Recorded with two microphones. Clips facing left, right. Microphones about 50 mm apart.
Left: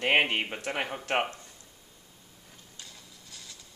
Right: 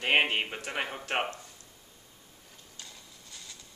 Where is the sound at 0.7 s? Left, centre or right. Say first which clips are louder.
Left 4 dB; centre.